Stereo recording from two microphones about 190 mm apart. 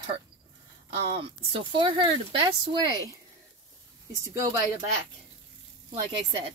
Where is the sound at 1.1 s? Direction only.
30° right (ahead or behind).